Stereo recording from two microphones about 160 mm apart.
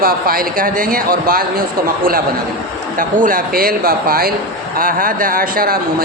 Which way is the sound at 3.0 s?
60° right (ahead or behind).